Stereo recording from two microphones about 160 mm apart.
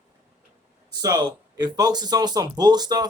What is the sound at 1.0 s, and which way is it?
Speech, 25° right (ahead or behind).